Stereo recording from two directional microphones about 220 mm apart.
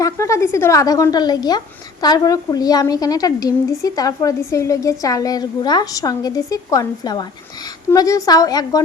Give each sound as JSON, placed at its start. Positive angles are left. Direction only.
{"t": 0.0, "sound": "a woman's voice", "side_deg": 15}